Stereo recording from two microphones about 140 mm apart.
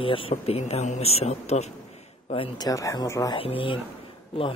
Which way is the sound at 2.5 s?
25° left (ahead or behind).